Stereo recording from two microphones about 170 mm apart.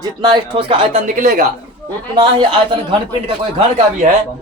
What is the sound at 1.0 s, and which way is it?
Speech, 55° right (ahead or behind).